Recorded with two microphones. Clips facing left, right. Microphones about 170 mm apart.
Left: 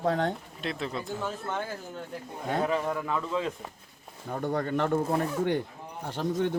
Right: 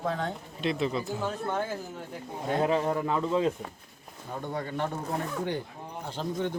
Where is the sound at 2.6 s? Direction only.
25° right (ahead or behind).